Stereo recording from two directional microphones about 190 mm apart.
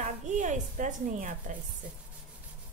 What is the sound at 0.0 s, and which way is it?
A woman's voice, 40° right (ahead or behind).